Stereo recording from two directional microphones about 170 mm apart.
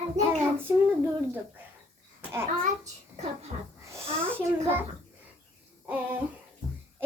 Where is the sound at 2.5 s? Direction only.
45° right (ahead or behind).